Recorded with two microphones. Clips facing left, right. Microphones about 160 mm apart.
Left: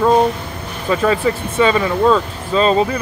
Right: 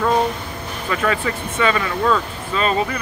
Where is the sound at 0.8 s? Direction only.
25° left (ahead or behind).